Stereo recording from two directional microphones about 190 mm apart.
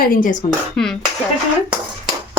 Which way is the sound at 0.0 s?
45° left (ahead or behind).